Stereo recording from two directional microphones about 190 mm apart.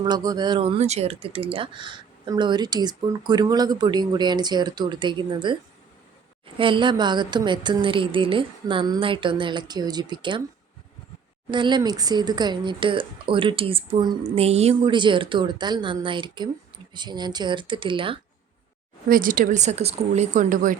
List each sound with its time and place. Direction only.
0.0 s speech: 20° right (ahead or behind)
6.6 s speech: 25° right (ahead or behind)
11.5 s speech: 25° right (ahead or behind)
19.0 s speech: 45° right (ahead or behind)